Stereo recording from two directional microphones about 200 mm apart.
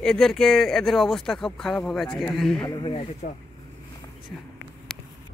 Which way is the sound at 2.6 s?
25° left (ahead or behind).